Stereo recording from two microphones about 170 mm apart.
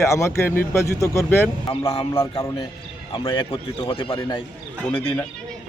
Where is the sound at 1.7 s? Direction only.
25° left (ahead or behind).